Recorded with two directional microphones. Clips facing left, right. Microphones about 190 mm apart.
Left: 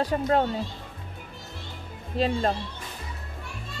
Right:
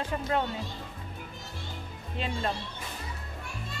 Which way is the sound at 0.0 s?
40° left (ahead or behind).